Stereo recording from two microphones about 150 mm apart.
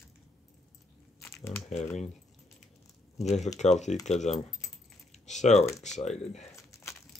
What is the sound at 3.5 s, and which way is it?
Speech, 50° left (ahead or behind).